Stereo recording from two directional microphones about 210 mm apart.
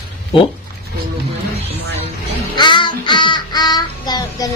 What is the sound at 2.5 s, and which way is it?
Child singing, 20° left (ahead or behind).